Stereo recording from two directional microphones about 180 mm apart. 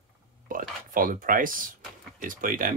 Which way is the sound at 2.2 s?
50° right (ahead or behind).